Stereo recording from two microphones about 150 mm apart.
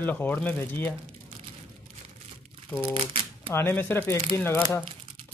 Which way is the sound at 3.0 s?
40° right (ahead or behind).